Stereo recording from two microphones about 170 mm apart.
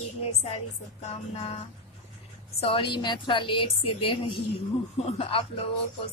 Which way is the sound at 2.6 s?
30° left (ahead or behind).